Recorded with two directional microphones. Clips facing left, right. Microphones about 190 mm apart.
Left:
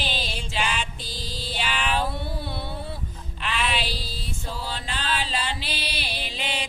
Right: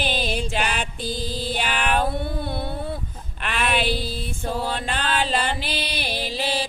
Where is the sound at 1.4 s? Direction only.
50° right (ahead or behind).